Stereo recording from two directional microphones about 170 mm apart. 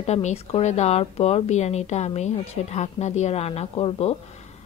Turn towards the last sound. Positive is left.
turn(degrees=35)  # may be behind; listen again after turning